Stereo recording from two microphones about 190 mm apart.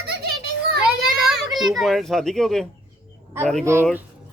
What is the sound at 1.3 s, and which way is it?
A child's voice, centre (ahead or behind).